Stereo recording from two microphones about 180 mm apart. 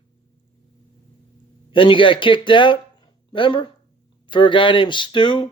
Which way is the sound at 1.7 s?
30° left (ahead or behind).